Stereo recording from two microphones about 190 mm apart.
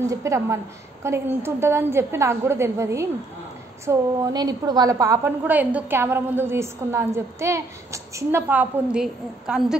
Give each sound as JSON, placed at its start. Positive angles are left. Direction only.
{"t": 0.0, "sound": "a woman's voice", "side_deg": -15}